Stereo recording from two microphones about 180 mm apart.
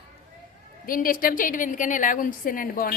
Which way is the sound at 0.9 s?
50° left (ahead or behind).